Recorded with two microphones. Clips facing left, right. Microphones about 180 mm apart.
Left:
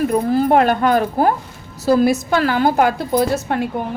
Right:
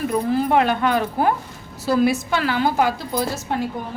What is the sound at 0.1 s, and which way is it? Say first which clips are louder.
A woman's voice: left 4 dB; 45° left (ahead or behind).